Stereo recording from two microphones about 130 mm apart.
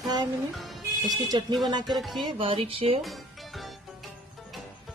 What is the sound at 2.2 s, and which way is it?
Speech, 40° right (ahead or behind).